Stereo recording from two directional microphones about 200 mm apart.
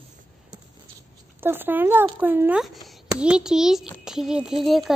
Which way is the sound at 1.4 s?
10° right (ahead or behind).